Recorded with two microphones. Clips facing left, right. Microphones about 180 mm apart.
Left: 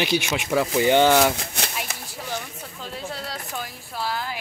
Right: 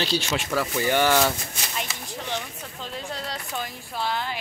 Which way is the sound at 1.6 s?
70° left (ahead or behind).